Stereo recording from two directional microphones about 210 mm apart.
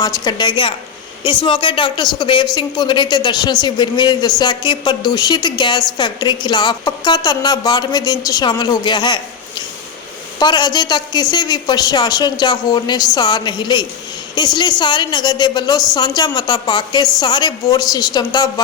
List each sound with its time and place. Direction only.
0.0 s a woman's voice: 20° left (ahead or behind)
10.4 s a woman's voice: 20° left (ahead or behind)